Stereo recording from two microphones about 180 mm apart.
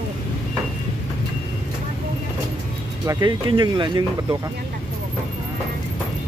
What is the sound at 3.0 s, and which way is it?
Speech, 20° right (ahead or behind).